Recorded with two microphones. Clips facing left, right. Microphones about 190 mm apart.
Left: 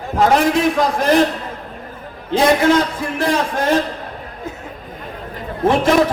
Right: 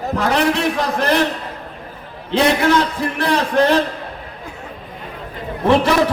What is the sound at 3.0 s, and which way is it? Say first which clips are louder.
Speech: even; 65° right (ahead or behind).